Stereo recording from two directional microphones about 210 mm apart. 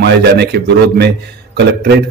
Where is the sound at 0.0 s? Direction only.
55° right (ahead or behind).